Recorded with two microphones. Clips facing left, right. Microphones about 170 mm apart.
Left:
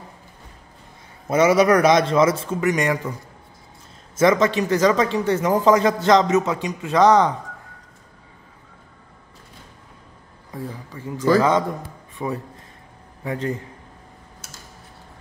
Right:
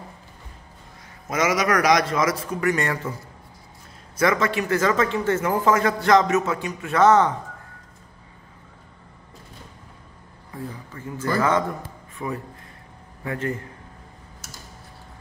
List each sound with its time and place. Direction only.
1.2 s speech: 30° left (ahead or behind); by 3.1 s 15° left (ahead or behind)
4.2 s speech: 20° left (ahead or behind)
10.9 s a man's voice: 15° left (ahead or behind)